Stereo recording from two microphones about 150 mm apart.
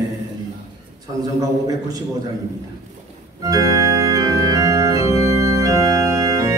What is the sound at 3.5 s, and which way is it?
Organ, 25° right (ahead or behind).